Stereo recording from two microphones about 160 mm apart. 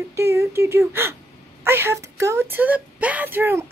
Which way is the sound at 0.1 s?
15° right (ahead or behind).